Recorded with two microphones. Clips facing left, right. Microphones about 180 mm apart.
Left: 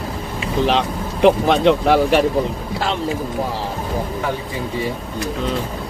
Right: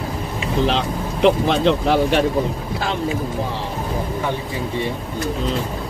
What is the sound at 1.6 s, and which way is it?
Speech, centre (ahead or behind).